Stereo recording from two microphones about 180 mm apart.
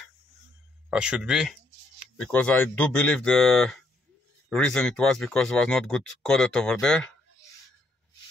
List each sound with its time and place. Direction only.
0.8 s speech: 5° right (ahead or behind)